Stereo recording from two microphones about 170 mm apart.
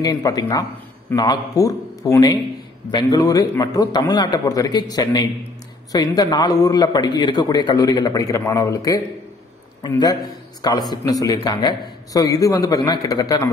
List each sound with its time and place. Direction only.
0.0 s a man's voice: 20° left (ahead or behind)